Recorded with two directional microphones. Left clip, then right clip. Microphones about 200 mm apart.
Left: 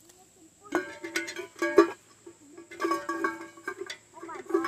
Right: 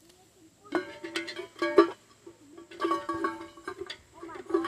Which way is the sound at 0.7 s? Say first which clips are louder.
Left 2 dB; 20° left (ahead or behind).